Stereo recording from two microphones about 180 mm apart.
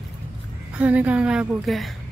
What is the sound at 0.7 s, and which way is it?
A woman's voice, 10° right (ahead or behind).